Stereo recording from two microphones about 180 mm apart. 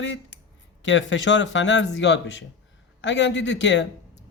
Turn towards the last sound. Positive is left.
turn(degrees=85)